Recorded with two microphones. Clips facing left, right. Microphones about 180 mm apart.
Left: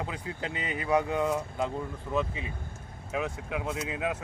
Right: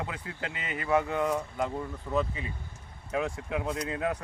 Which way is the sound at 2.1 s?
5° left (ahead or behind).